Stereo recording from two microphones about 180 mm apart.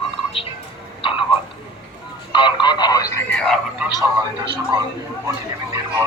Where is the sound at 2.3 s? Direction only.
25° left (ahead or behind).